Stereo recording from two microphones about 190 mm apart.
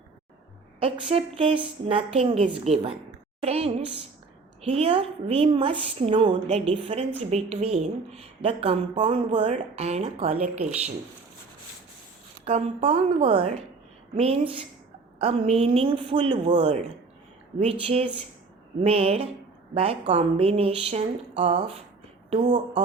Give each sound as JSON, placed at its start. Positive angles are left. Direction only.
{"t": 0.8, "sound": "a woman's voice", "side_deg": -30}
{"t": 12.5, "sound": "a woman's voice", "side_deg": -35}